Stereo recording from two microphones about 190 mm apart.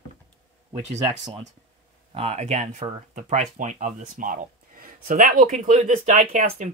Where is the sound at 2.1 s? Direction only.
35° right (ahead or behind).